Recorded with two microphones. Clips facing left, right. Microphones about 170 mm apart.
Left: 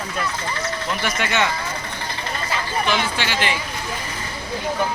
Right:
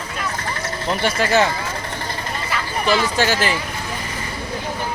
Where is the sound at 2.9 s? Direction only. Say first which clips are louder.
Right 8 dB; 45° right (ahead or behind).